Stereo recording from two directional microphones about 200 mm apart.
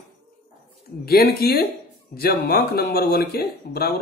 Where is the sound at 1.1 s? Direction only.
50° left (ahead or behind).